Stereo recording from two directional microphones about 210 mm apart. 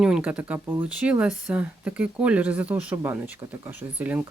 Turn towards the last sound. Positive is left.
turn(degrees=-10)  # may be behind; listen again after turning